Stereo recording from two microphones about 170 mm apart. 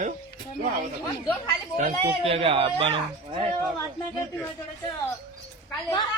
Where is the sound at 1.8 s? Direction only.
35° right (ahead or behind).